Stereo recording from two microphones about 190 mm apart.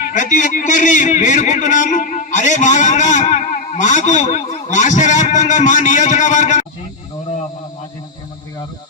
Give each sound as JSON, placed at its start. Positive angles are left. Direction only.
{"t": 0.0, "sound": "a man's voice", "side_deg": 40}